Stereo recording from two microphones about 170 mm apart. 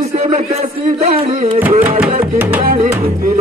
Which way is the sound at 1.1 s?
40° right (ahead or behind).